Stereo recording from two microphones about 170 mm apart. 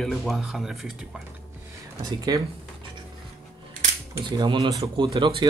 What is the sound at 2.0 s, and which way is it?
Speech, 20° right (ahead or behind).